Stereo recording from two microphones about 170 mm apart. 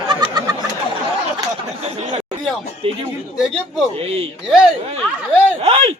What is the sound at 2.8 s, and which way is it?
Speech, 35° right (ahead or behind).